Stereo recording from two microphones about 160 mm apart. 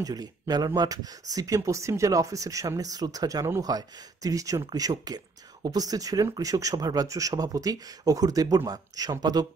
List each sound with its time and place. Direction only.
0.0 s speech: 25° right (ahead or behind)